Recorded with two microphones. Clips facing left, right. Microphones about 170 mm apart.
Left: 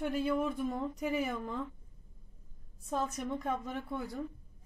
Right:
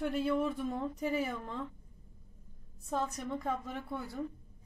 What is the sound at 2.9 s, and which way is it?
Speech, 5° left (ahead or behind).